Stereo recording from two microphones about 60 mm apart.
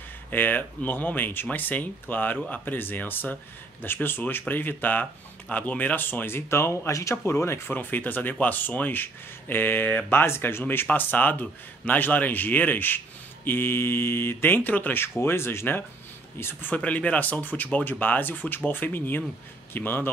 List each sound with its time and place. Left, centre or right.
0.3 s speech: left
6.9 s speech: left
7.6 s speech: left
10.9 s speech: left
16.7 s speech: left